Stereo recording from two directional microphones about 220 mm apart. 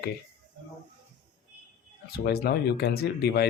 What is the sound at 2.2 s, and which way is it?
Speech, 45° left (ahead or behind).